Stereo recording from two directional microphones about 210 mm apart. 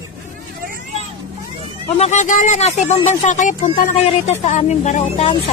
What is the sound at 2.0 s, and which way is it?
Speech, 35° left (ahead or behind).